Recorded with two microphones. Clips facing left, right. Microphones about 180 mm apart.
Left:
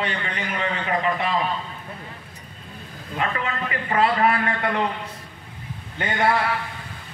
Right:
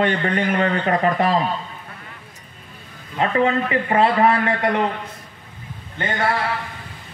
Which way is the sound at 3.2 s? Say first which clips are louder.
Right 8 dB; 30° right (ahead or behind).